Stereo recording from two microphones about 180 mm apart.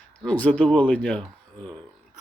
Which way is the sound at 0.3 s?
10° left (ahead or behind).